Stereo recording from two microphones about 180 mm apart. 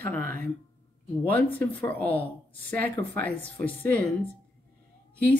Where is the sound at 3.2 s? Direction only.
10° left (ahead or behind).